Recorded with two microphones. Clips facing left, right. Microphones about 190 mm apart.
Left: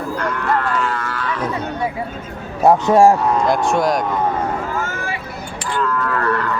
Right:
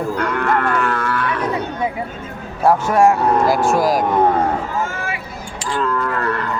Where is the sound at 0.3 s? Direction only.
60° right (ahead or behind).